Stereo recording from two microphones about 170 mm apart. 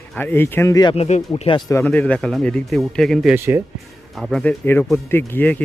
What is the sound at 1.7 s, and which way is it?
Speech, 10° left (ahead or behind).